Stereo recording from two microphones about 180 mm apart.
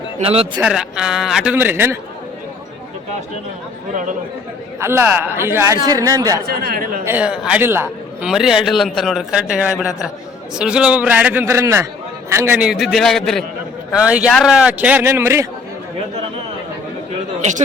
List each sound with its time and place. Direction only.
0.5 s a man's voice: 5° right (ahead or behind)
4.8 s speech: 10° right (ahead or behind)
6.5 s speech: 50° right (ahead or behind)
7.0 s a man's voice: 10° right (ahead or behind)